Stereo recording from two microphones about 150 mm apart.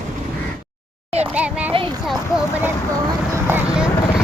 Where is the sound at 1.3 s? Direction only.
10° right (ahead or behind).